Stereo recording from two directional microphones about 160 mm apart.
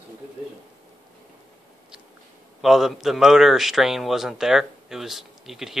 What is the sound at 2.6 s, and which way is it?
A man's voice, centre (ahead or behind).